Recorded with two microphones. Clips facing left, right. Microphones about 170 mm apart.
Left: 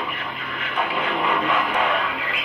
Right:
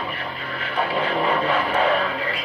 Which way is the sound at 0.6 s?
35° right (ahead or behind).